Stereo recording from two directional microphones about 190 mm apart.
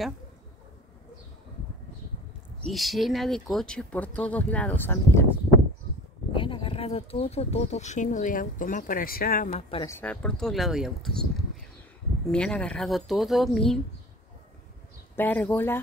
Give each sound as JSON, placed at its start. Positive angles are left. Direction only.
{"t": 2.6, "sound": "speech", "side_deg": 0}
{"t": 6.3, "sound": "speech", "side_deg": 25}
{"t": 9.6, "sound": "speech", "side_deg": 30}
{"t": 9.8, "sound": "speech", "side_deg": 10}
{"t": 15.1, "sound": "speech", "side_deg": 10}